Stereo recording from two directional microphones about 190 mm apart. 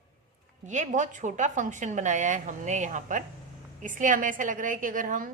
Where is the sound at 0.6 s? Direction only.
40° right (ahead or behind).